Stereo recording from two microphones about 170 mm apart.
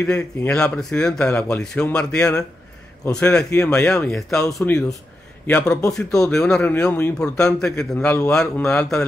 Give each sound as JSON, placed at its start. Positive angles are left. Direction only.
{"t": 0.0, "sound": "a man's voice", "side_deg": 10}
{"t": 3.5, "sound": "speech", "side_deg": 15}
{"t": 4.1, "sound": "a man's voice", "side_deg": 5}